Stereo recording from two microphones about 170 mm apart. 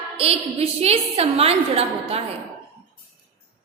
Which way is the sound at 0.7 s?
35° right (ahead or behind).